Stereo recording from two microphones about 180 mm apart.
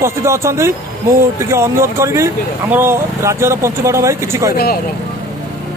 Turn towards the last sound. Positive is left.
turn(degrees=55)  # may be behind; listen again after turning